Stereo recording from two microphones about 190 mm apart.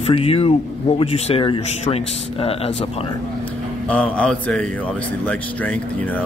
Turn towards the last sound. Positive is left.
turn(degrees=5)  # may be behind; listen again after turning